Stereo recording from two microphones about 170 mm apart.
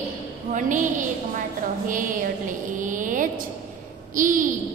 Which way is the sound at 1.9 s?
50° right (ahead or behind).